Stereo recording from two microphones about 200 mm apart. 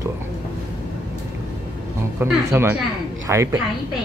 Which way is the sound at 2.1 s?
10° right (ahead or behind).